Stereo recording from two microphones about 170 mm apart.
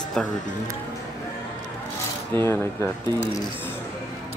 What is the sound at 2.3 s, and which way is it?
Speech, 15° left (ahead or behind).